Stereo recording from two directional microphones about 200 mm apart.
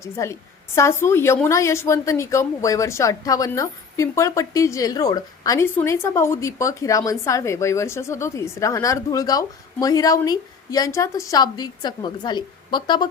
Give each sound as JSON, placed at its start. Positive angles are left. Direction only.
{"t": 0.0, "sound": "a woman's voice", "side_deg": 15}